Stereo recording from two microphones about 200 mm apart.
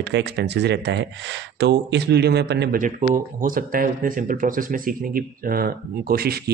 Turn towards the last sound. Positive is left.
turn(degrees=-50)  # may be behind; listen again after turning